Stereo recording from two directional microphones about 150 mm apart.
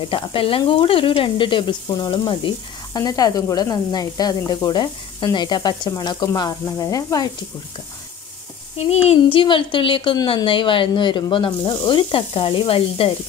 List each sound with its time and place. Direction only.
0.1 s speech: 35° left (ahead or behind)
8.7 s a woman's voice: 45° left (ahead or behind)